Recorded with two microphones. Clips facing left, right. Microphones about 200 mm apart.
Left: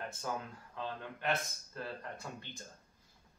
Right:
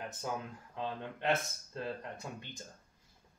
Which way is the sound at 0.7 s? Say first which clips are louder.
Right 3 dB; 25° right (ahead or behind).